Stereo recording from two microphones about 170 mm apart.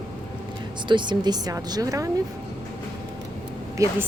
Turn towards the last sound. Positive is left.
turn(degrees=-15)  # may be behind; listen again after turning